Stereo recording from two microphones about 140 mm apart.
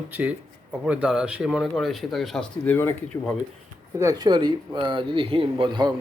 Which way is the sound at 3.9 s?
25° right (ahead or behind).